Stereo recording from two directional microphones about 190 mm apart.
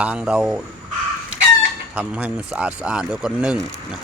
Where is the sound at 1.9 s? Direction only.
5° right (ahead or behind).